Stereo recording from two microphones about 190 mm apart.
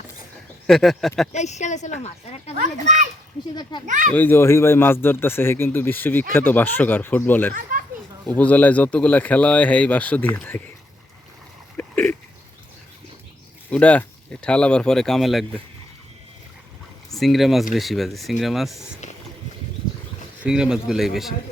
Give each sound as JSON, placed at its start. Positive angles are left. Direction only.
{"t": 0.7, "sound": "speech", "side_deg": 0}
{"t": 1.3, "sound": "a woman's voice", "side_deg": 35}
{"t": 2.6, "sound": "a child's voice", "side_deg": -40}
{"t": 3.5, "sound": "a child's voice", "side_deg": 20}
{"t": 3.8, "sound": "a child's voice", "side_deg": -40}
{"t": 4.1, "sound": "speech", "side_deg": 10}
{"t": 7.5, "sound": "children playing", "side_deg": -45}
{"t": 8.3, "sound": "speech", "side_deg": 5}
{"t": 11.8, "sound": "a sound", "side_deg": 5}
{"t": 13.7, "sound": "speech", "side_deg": 5}
{"t": 17.2, "sound": "speech", "side_deg": 0}
{"t": 20.4, "sound": "speech", "side_deg": -5}